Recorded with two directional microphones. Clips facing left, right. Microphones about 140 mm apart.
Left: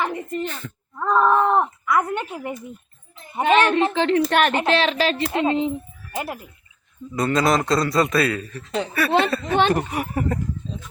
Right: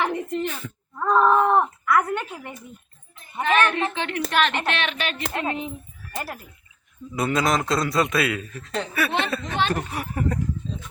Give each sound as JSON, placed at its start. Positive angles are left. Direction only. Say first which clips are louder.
{"t": 0.0, "sound": "a sound", "louder": "right 1 dB", "side_deg": 0}
{"t": 0.4, "sound": "speech", "louder": "right 1 dB", "side_deg": -5}
{"t": 0.9, "sound": "groan", "louder": "even", "side_deg": 5}
{"t": 1.4, "sound": "a sound", "louder": "even", "side_deg": -5}
{"t": 1.8, "sound": "a sound", "louder": "even", "side_deg": 10}
{"t": 3.3, "sound": "speech", "louder": "left 4 dB", "side_deg": 25}
{"t": 4.3, "sound": "speech", "louder": "left 3 dB", "side_deg": 50}
{"t": 4.5, "sound": "speech", "louder": "left 7 dB", "side_deg": 30}
{"t": 7.1, "sound": "a man's voice", "louder": "left 3 dB", "side_deg": -5}
{"t": 9.5, "sound": "speech", "louder": "left 6 dB", "side_deg": 10}